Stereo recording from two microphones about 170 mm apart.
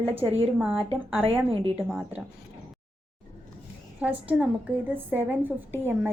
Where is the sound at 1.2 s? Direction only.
35° right (ahead or behind).